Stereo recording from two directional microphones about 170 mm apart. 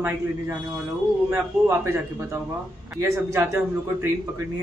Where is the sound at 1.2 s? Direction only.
15° right (ahead or behind).